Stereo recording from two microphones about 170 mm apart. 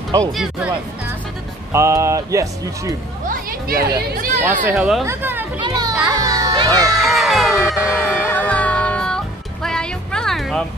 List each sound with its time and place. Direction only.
0.2 s speech: centre (ahead or behind)
1.7 s speech: 15° right (ahead or behind)
3.3 s speech: 60° right (ahead or behind)
4.6 s speech: 5° right (ahead or behind)
5.6 s children playing: 25° right (ahead or behind)
6.1 s music: 20° right (ahead or behind)
6.9 s crowd: centre (ahead or behind)
7.8 s music: 10° left (ahead or behind)